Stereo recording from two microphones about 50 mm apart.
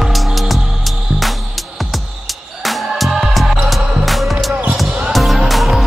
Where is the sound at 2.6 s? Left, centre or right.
Centre.